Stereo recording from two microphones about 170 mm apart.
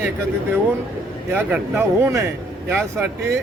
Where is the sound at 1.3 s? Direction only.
10° right (ahead or behind).